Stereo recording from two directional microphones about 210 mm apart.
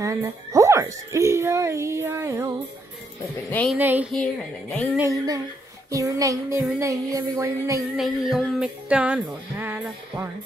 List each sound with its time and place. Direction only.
0.0 s speech: 15° right (ahead or behind)
3.4 s speech: 10° left (ahead or behind)
3.7 s speech: 10° right (ahead or behind)
4.2 s speech: 5° left (ahead or behind)
4.9 s speech: 15° right (ahead or behind)
7.9 s speech: centre (ahead or behind)